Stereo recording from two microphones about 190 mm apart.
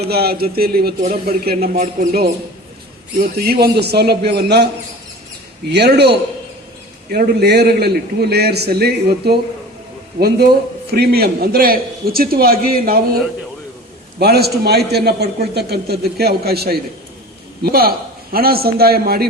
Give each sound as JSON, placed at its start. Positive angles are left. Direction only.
{"t": 0.1, "sound": "a man's voice", "side_deg": -55}
{"t": 14.2, "sound": "a man's voice", "side_deg": -55}